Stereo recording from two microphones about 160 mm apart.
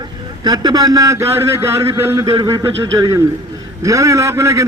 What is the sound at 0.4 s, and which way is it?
A man's voice, 25° right (ahead or behind).